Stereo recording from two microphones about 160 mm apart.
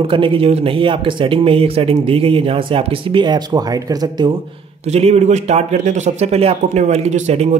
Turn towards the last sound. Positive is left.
turn(degrees=-45)  # may be behind; listen again after turning